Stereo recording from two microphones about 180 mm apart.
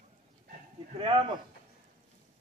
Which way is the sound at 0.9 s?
30° right (ahead or behind).